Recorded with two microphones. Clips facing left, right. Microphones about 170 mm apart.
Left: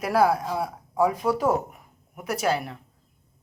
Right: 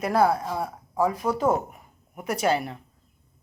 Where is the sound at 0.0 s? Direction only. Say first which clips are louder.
Even; 5° left (ahead or behind).